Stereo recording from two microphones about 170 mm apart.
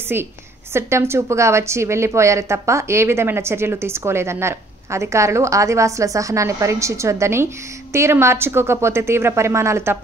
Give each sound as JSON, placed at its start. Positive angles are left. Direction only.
{"t": 0.7, "sound": "a woman's voice", "side_deg": -15}